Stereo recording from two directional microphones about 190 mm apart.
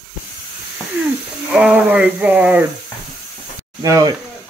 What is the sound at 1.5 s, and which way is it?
Speech, 5° right (ahead or behind).